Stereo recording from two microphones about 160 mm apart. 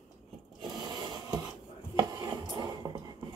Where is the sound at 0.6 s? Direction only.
25° right (ahead or behind).